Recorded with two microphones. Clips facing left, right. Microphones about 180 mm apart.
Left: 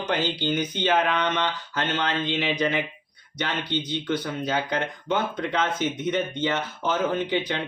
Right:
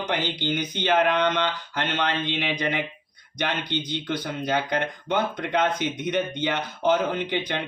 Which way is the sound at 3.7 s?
15° right (ahead or behind).